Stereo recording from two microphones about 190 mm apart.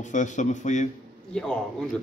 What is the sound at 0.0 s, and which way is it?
Speech, 40° left (ahead or behind).